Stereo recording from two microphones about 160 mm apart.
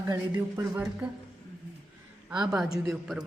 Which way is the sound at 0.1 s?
20° right (ahead or behind).